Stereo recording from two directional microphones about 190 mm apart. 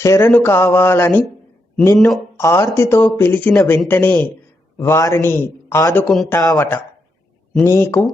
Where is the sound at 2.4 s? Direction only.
15° left (ahead or behind).